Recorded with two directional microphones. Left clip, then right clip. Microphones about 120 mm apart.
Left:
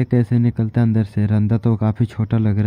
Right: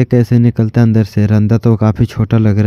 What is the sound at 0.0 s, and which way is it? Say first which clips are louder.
Speech: right 7 dB; 40° right (ahead or behind).